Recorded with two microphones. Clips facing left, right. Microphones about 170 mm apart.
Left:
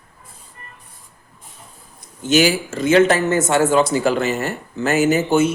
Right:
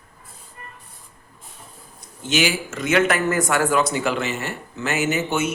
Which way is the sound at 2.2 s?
40° left (ahead or behind).